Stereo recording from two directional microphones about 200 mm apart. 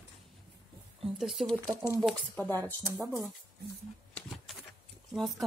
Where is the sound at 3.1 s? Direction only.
Centre (ahead or behind).